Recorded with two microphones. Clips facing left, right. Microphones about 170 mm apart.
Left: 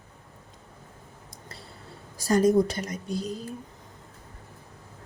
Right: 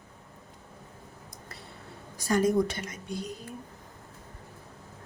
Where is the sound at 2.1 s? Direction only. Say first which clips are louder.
Left 4 dB; 35° left (ahead or behind).